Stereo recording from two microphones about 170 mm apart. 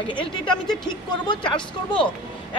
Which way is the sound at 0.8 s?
25° left (ahead or behind).